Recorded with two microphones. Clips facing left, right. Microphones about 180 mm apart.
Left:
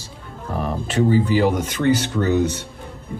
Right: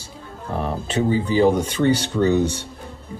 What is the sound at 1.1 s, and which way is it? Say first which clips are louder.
Speech: right 1 dB; 25° right (ahead or behind).